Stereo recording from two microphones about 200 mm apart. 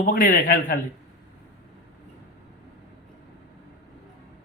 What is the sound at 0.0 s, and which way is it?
Speech, 45° left (ahead or behind).